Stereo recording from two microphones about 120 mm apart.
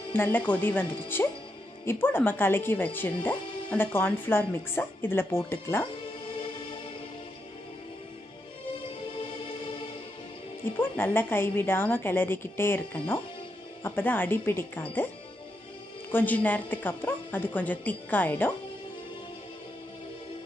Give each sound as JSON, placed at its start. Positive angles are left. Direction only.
{"t": 0.1, "sound": "speech", "side_deg": 15}
{"t": 9.1, "sound": "music", "side_deg": 45}
{"t": 10.6, "sound": "speech", "side_deg": 15}
{"t": 16.1, "sound": "speech", "side_deg": 15}